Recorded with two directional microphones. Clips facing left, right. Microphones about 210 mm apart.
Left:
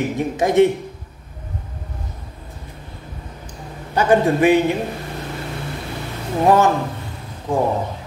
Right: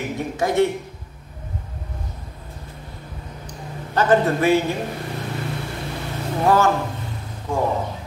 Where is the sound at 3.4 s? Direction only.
10° left (ahead or behind).